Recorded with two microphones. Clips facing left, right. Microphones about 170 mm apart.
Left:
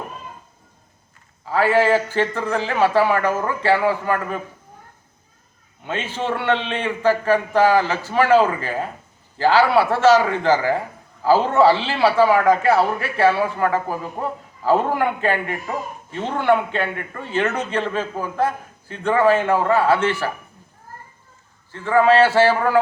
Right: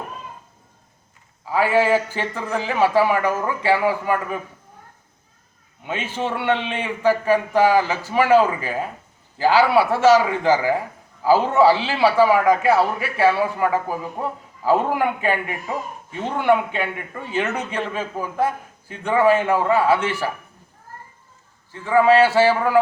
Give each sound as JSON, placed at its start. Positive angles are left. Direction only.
{"t": 1.5, "sound": "a man's voice", "side_deg": -15}
{"t": 5.8, "sound": "a man's voice", "side_deg": -10}
{"t": 21.7, "sound": "a man's voice", "side_deg": -10}